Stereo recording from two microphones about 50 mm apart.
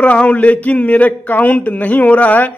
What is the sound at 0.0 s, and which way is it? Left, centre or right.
Speech, left.